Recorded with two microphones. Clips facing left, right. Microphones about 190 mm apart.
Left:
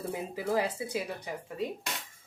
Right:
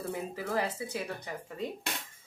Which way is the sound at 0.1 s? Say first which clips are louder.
Left 3 dB; 10° left (ahead or behind).